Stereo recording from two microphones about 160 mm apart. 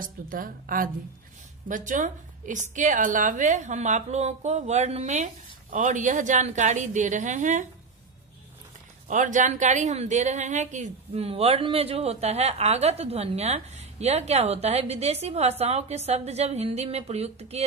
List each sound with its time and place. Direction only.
0.0 s a woman's voice: 60° right (ahead or behind)
9.0 s a woman's voice: 50° right (ahead or behind)